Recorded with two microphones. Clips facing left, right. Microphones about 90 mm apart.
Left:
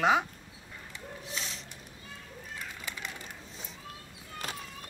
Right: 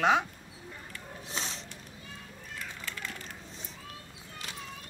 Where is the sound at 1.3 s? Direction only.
35° right (ahead or behind).